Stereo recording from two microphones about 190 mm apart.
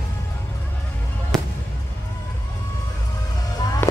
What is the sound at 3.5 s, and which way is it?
Music, 20° left (ahead or behind).